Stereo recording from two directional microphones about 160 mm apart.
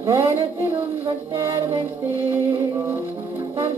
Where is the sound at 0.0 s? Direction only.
15° right (ahead or behind).